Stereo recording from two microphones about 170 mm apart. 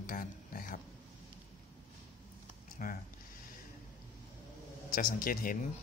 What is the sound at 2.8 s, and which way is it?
Speech, 55° left (ahead or behind).